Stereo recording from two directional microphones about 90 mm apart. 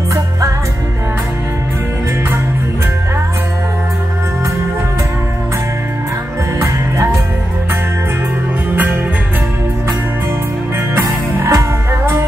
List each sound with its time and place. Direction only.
6.6 s music: 35° right (ahead or behind)
11.0 s music: 25° right (ahead or behind)